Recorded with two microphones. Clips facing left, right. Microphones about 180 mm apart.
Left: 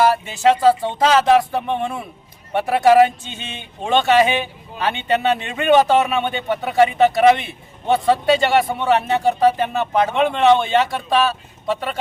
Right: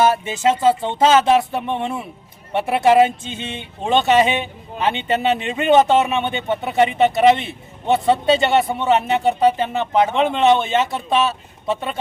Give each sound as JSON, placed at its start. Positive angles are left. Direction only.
{"t": 0.0, "sound": "a man's voice", "side_deg": -20}